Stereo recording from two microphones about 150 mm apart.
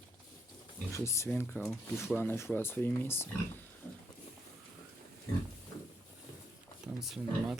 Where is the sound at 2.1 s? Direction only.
15° left (ahead or behind).